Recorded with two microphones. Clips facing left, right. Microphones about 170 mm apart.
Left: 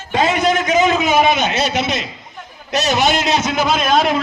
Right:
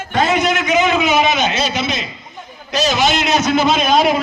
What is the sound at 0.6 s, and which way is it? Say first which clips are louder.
A man's voice: even; 40° left (ahead or behind).